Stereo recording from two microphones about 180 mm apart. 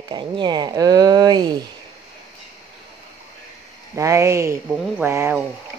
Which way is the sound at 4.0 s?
15° right (ahead or behind).